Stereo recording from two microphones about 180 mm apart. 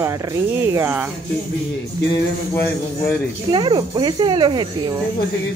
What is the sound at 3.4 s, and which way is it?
Speech, 25° right (ahead or behind).